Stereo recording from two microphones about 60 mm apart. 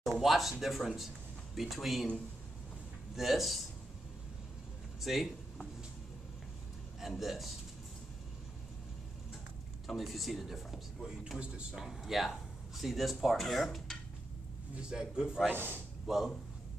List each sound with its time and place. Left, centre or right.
0.2 s speech: centre
3.2 s speech: centre
5.0 s speech: centre
7.0 s speech: centre
9.8 s speech: centre
11.0 s a man's voice: centre
11.7 s speech: centre
14.8 s a man's voice: centre